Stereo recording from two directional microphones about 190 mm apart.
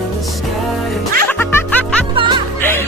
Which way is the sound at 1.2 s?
10° left (ahead or behind).